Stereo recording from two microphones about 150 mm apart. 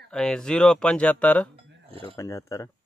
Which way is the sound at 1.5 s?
40° right (ahead or behind).